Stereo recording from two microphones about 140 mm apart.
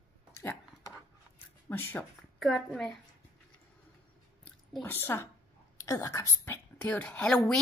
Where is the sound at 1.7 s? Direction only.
15° left (ahead or behind).